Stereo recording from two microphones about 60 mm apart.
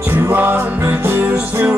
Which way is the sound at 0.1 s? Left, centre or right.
Right.